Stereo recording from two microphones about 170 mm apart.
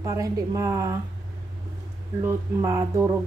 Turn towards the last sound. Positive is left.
turn(degrees=-15)  # may be behind; listen again after turning